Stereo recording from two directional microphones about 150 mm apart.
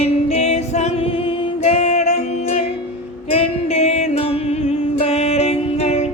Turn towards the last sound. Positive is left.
turn(degrees=45)  # may be behind; listen again after turning